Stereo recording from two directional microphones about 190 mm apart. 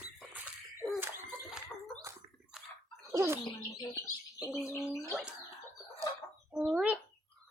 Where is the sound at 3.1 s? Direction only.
15° right (ahead or behind).